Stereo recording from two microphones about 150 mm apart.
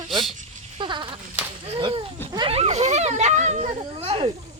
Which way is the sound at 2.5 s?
45° right (ahead or behind).